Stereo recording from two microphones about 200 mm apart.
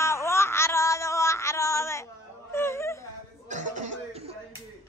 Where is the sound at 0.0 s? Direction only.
15° left (ahead or behind).